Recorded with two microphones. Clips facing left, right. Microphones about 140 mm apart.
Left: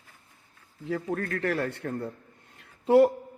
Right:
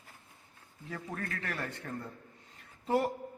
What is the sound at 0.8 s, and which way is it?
A man's voice, 60° left (ahead or behind).